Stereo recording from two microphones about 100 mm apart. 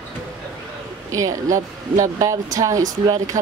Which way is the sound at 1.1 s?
35° right (ahead or behind).